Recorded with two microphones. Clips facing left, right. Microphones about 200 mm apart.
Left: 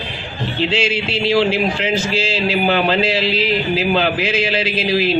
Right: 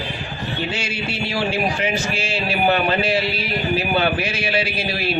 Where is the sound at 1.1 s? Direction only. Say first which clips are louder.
Left 7 dB; 90° left.